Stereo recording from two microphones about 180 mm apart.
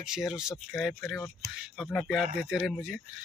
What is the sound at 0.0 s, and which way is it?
Speech, 5° right (ahead or behind).